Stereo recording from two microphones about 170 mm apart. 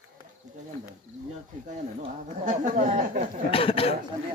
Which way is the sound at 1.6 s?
45° right (ahead or behind).